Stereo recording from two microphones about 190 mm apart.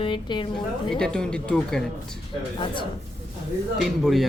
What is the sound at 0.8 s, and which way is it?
Speech, 5° left (ahead or behind).